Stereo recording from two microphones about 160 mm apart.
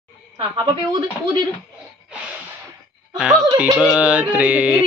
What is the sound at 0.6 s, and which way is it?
Speech, 25° right (ahead or behind).